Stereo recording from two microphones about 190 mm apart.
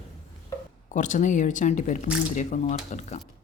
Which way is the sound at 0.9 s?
40° left (ahead or behind).